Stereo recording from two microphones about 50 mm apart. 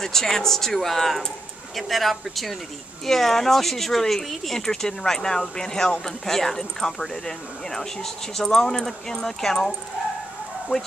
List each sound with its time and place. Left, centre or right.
0.0 s speech: centre